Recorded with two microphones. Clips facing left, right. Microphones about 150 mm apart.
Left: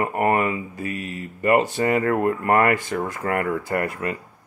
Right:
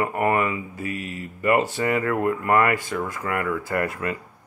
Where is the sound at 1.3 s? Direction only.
30° left (ahead or behind).